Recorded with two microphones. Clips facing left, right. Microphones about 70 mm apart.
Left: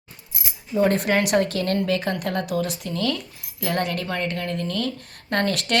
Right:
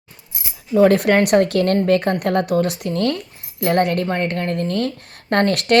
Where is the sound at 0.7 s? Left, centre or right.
Right.